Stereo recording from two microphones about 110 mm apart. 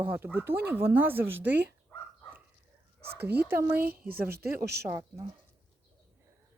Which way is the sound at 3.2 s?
20° right (ahead or behind).